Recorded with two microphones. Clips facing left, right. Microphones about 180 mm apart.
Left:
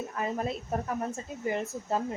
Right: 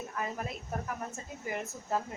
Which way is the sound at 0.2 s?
30° left (ahead or behind).